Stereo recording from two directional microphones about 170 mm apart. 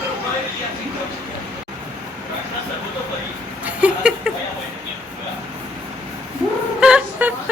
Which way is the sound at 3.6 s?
10° right (ahead or behind).